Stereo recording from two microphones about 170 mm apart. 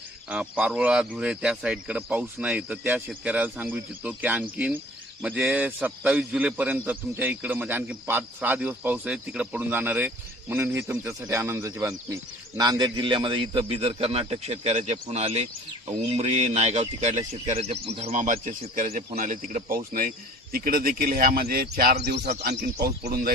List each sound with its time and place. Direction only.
0.3 s a man's voice: 5° right (ahead or behind); by 23.3 s 65° right (ahead or behind)